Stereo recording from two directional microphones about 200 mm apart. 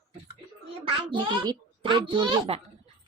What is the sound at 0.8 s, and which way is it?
A child's voice, 25° right (ahead or behind).